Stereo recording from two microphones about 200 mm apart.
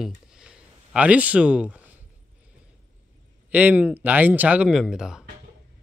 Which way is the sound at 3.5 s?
5° right (ahead or behind).